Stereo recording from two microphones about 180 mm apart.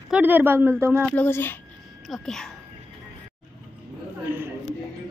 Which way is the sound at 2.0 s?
Centre (ahead or behind).